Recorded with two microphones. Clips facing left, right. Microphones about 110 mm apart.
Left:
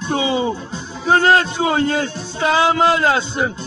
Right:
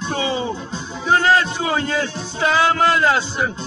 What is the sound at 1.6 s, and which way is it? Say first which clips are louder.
Speech: left 3 dB; 30° left (ahead or behind).